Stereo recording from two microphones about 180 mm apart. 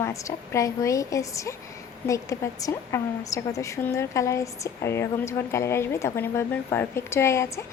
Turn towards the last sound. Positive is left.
turn(degrees=15)  # may be behind; listen again after turning